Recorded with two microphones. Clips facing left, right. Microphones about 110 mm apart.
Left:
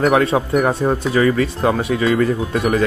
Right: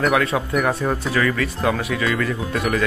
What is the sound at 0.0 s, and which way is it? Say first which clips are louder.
Speech: left 4 dB; 35° left (ahead or behind).